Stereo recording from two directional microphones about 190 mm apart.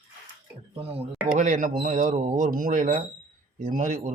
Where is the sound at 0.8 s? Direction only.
30° right (ahead or behind).